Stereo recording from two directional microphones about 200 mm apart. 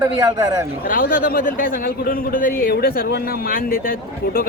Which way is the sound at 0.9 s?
45° left (ahead or behind).